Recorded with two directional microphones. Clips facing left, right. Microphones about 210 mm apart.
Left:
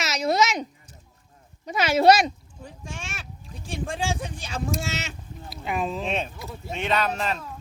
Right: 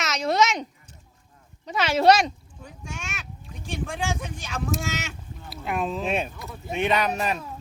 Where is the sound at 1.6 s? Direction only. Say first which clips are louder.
Left 1 dB; 10° left (ahead or behind).